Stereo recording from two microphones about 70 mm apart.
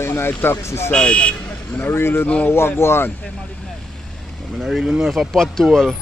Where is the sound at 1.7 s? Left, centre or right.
Left.